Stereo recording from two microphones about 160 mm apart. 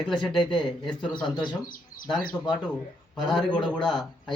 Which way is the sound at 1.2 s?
25° left (ahead or behind).